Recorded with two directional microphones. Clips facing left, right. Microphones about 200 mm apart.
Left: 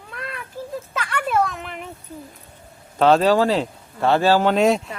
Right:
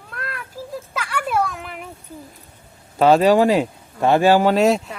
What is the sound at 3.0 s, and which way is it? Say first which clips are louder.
Speech: right 2 dB; 10° right (ahead or behind).